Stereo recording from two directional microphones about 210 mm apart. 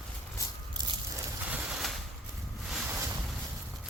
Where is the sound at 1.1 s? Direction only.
5° right (ahead or behind).